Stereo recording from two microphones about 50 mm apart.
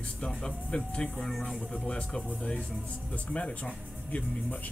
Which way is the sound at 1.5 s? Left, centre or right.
Centre.